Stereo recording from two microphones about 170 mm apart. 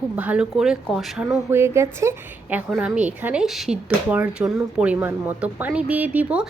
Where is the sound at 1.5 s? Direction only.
15° right (ahead or behind).